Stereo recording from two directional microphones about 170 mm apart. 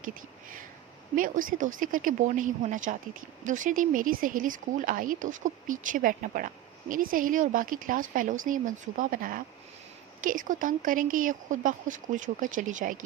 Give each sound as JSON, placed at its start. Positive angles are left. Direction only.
{"t": 0.0, "sound": "speech", "side_deg": -55}